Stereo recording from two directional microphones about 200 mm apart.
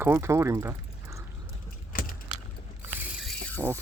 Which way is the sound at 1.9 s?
45° left (ahead or behind).